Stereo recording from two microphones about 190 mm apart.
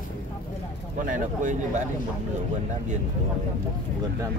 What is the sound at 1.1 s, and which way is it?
Speech, 45° right (ahead or behind).